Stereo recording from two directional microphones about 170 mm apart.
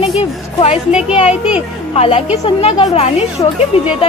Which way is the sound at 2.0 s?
35° left (ahead or behind).